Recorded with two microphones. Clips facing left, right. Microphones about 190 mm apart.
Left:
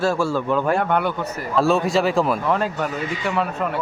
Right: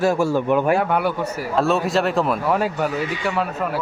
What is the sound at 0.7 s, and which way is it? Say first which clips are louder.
Speech: right 1 dB; 5° right (ahead or behind).